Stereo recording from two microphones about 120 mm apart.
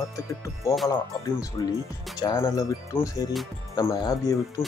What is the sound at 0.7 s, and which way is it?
Speech, 25° left (ahead or behind).